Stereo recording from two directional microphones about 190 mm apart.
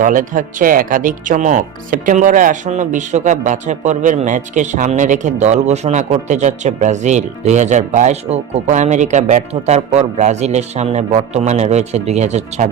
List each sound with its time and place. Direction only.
0.0 s speech: 45° right (ahead or behind)